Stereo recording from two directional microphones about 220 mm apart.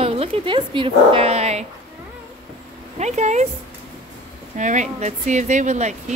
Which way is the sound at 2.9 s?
30° right (ahead or behind).